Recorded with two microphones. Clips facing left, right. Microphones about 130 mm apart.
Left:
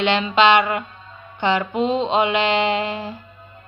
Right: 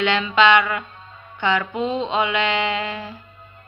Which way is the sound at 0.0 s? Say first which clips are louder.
Left 1 dB; 25° left (ahead or behind).